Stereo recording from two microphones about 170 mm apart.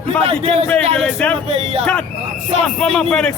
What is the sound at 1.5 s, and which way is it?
Speech, 35° right (ahead or behind).